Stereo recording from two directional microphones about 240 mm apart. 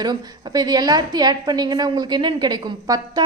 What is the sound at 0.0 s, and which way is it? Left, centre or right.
A woman's voice, centre.